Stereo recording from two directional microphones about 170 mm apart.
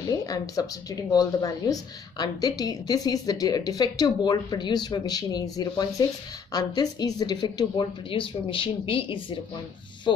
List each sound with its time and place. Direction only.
0.1 s speech: 20° left (ahead or behind)